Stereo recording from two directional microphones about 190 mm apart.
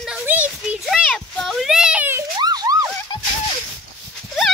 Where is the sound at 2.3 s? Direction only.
20° right (ahead or behind).